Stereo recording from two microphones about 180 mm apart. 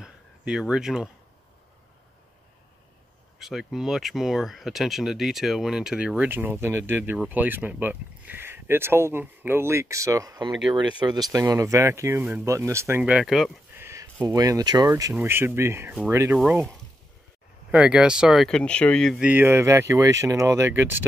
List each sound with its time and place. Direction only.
0.0 s a sound: 5° right (ahead or behind)
3.3 s speech: centre (ahead or behind)
13.7 s a sound: 15° right (ahead or behind)
14.2 s speech: 20° right (ahead or behind)
16.3 s speech: centre (ahead or behind)
19.2 s speech: 10° right (ahead or behind)